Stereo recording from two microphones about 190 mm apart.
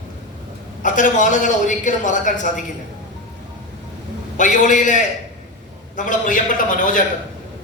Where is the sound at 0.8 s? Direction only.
45° left (ahead or behind).